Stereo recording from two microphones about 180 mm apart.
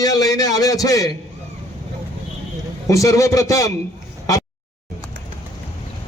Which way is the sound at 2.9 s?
20° left (ahead or behind).